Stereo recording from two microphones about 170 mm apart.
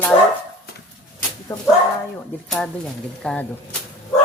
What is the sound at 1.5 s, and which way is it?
Speech, 15° left (ahead or behind).